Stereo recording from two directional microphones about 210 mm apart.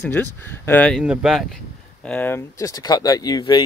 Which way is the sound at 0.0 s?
10° left (ahead or behind).